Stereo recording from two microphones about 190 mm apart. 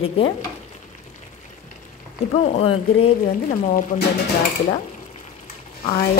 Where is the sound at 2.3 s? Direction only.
35° left (ahead or behind).